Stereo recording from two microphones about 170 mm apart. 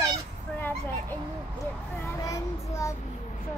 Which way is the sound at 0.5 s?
10° left (ahead or behind).